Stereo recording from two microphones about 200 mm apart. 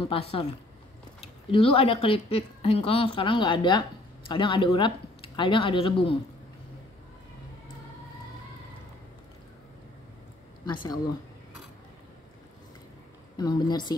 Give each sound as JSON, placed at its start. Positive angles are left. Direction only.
{"t": 0.0, "sound": "a woman's voice", "side_deg": 30}
{"t": 1.5, "sound": "a woman's voice", "side_deg": 30}
{"t": 10.7, "sound": "a woman's voice", "side_deg": 20}
{"t": 13.4, "sound": "a woman's voice", "side_deg": 20}